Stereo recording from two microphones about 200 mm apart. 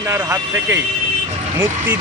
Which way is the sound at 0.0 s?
15° right (ahead or behind).